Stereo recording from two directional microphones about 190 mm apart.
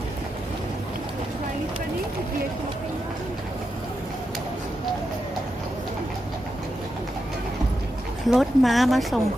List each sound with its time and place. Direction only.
8.3 s speech: centre (ahead or behind)